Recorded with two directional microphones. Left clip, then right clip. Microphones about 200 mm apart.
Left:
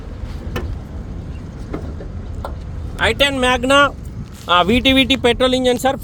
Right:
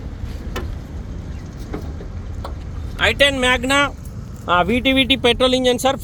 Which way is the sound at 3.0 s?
30° left (ahead or behind).